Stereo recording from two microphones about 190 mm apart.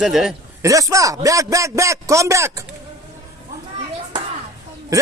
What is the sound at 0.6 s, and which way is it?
A man's voice, 15° right (ahead or behind).